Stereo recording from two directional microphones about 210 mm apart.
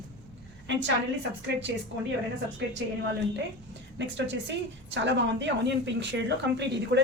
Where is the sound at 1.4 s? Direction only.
55° right (ahead or behind).